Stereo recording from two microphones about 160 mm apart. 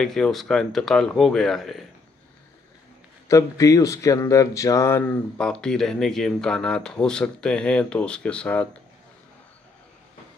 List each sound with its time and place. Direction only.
0.0 s speech: 5° left (ahead or behind)
3.3 s speech: 20° left (ahead or behind)